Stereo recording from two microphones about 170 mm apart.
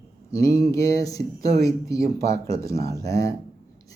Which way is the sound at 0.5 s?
20° left (ahead or behind).